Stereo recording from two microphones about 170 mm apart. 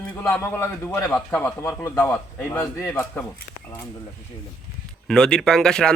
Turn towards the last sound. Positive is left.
turn(degrees=5)  # may be behind; listen again after turning